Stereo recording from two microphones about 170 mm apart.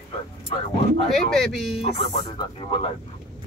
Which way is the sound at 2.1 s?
25° left (ahead or behind).